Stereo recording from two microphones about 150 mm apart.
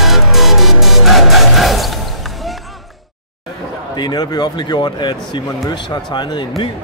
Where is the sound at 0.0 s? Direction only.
Centre (ahead or behind).